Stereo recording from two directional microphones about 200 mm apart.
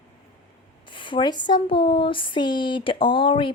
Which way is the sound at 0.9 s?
25° left (ahead or behind).